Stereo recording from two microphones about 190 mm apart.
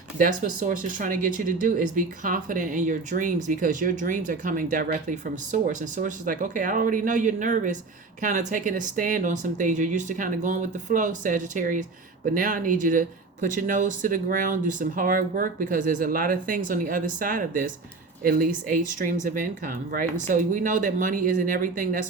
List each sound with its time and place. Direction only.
0.2 s speech: 45° right (ahead or behind)